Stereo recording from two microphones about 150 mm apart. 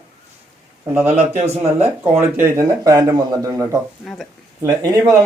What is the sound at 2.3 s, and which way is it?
Speech, 15° right (ahead or behind).